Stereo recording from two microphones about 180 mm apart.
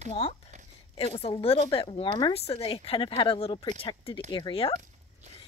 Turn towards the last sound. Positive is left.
turn(degrees=30)  # may be behind; listen again after turning